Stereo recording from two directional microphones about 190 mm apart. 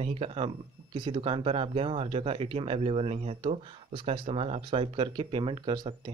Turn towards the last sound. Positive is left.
turn(degrees=-20)  # may be behind; listen again after turning